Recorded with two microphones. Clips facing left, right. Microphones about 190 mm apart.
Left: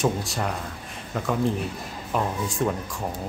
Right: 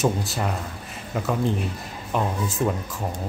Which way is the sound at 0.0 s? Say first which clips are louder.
Right 1 dB; 5° right (ahead or behind).